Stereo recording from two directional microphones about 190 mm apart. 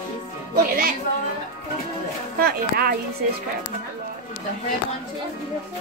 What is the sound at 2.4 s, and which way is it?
Speech, 50° right (ahead or behind).